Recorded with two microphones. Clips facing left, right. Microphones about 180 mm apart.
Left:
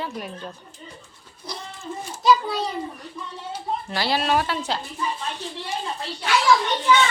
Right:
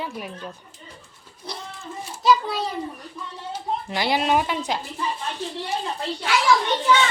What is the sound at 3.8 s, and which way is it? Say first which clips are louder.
Speech: right 1 dB; 20° right (ahead or behind).